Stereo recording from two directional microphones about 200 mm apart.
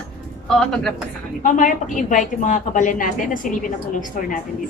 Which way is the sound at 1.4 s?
40° left (ahead or behind).